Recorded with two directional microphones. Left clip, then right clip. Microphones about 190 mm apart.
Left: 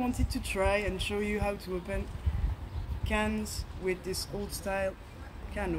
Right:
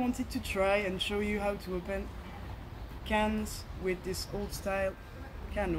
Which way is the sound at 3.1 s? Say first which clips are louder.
Right 1 dB; 5° left (ahead or behind).